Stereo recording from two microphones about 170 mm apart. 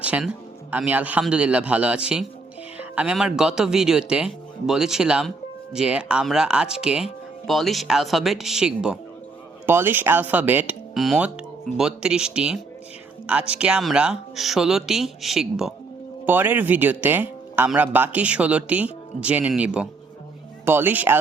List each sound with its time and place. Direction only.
0.0 s music: 10° right (ahead or behind)
0.7 s speech: 10° right (ahead or behind)